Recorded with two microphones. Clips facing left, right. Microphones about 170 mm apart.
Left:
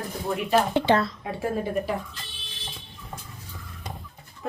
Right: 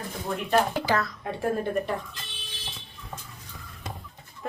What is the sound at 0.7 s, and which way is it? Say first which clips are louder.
Speech: left 5 dB; 25° left (ahead or behind).